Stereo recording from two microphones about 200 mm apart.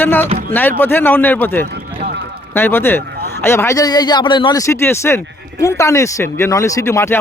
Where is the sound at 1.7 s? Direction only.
55° right (ahead or behind).